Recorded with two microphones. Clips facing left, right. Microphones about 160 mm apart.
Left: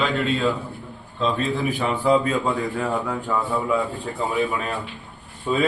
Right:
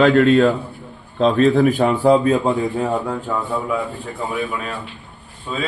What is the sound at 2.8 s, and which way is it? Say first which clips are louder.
Speech: right 4 dB; 15° right (ahead or behind).